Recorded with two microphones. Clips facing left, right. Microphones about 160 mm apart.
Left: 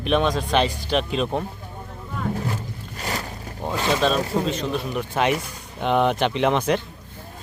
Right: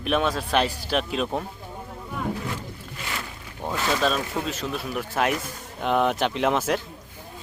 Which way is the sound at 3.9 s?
Centre (ahead or behind).